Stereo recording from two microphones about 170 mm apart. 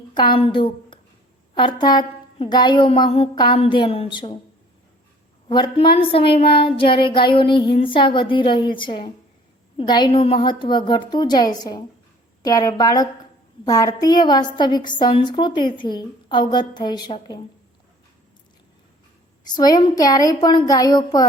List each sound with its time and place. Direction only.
0.1 s a woman's voice: 25° left (ahead or behind)
5.5 s a woman's voice: 25° left (ahead or behind)
19.5 s a woman's voice: 25° left (ahead or behind)